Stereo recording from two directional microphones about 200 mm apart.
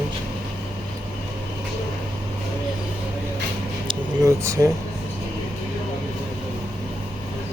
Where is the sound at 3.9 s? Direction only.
15° right (ahead or behind).